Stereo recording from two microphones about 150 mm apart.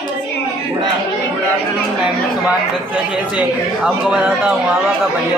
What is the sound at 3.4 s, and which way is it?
Speech, 5° right (ahead or behind).